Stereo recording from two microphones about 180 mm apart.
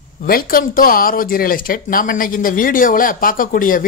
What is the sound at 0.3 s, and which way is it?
Speech, 55° left (ahead or behind).